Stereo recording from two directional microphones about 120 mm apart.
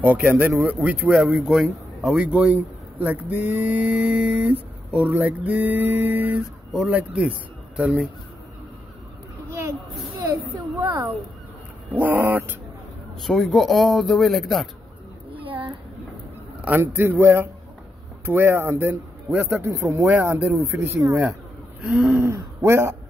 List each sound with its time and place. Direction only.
0.0 s speech: 15° right (ahead or behind)
6.7 s a man's voice: centre (ahead or behind)
7.0 s speech: 10° right (ahead or behind)
9.5 s a sound: 25° right (ahead or behind)
11.9 s speech: 15° right (ahead or behind)
13.2 s speech: centre (ahead or behind)
15.3 s a sound: 45° right (ahead or behind)
16.6 s speech: 15° right (ahead or behind)
21.8 s speech: 5° right (ahead or behind)
22.2 s speech: 20° right (ahead or behind)